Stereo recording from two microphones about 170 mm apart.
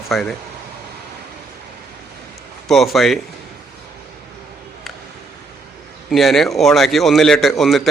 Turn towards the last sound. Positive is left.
turn(degrees=0)  # may be behind; listen again after turning